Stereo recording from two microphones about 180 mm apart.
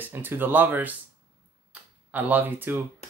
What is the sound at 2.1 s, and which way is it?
Speech, 10° right (ahead or behind).